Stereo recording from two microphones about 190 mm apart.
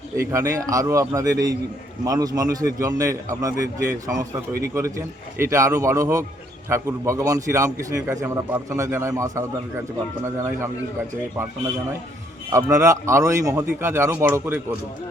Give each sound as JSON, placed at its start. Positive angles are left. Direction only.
{"t": 0.2, "sound": "a man's voice", "side_deg": -15}
{"t": 12.5, "sound": "a man's voice", "side_deg": -15}